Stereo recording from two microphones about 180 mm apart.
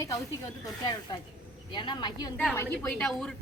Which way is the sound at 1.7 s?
25° left (ahead or behind).